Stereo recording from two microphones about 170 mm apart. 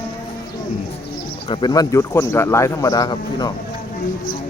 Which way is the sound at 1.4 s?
25° left (ahead or behind).